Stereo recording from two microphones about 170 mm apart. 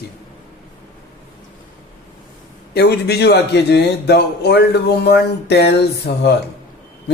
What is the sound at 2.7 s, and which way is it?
A man's voice, 75° left (ahead or behind).